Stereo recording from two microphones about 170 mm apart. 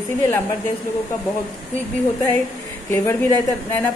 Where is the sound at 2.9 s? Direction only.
15° left (ahead or behind).